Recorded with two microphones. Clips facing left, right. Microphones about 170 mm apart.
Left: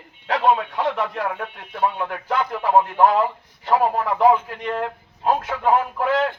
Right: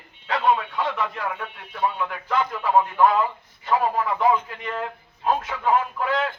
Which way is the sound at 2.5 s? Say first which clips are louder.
Left 4 dB; 35° left (ahead or behind).